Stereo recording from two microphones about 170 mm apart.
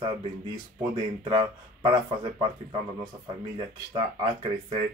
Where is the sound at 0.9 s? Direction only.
25° right (ahead or behind).